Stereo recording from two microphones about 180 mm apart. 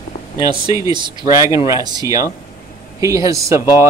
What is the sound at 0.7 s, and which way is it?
Speech, 20° right (ahead or behind).